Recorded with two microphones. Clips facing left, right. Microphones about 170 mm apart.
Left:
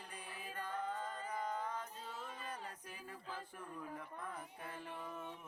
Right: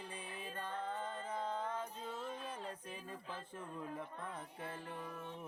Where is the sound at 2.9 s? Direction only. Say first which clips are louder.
Right 2 dB; 25° right (ahead or behind).